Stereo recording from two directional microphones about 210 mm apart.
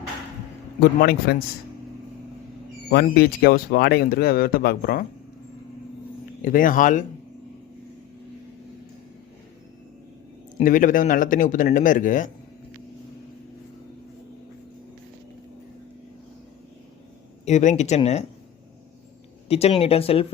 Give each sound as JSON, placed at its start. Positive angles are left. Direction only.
{"t": 0.8, "sound": "speech", "side_deg": 50}
{"t": 2.9, "sound": "speech", "side_deg": 45}
{"t": 6.4, "sound": "a man's voice", "side_deg": 40}
{"t": 10.6, "sound": "a man's voice", "side_deg": 40}
{"t": 17.4, "sound": "a man's voice", "side_deg": 35}
{"t": 19.5, "sound": "speech", "side_deg": 30}